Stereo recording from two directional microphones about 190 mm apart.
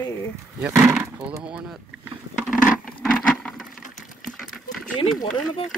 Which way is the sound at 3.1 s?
5° left (ahead or behind).